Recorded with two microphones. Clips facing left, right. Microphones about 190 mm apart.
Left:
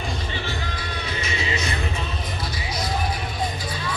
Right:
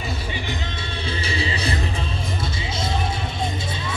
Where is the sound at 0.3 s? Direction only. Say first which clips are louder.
Right 1 dB; 20° right (ahead or behind).